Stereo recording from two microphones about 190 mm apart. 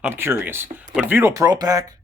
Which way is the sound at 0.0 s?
10° right (ahead or behind).